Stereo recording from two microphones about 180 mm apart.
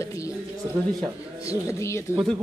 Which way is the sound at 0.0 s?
15° left (ahead or behind).